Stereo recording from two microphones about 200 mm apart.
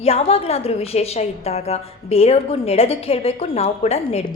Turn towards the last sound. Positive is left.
turn(degrees=30)  # may be behind; listen again after turning